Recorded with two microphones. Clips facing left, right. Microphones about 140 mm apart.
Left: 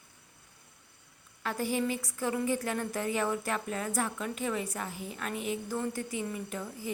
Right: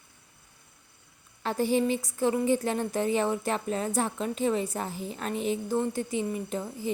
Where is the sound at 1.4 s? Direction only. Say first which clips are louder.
Right 6 dB; 25° right (ahead or behind).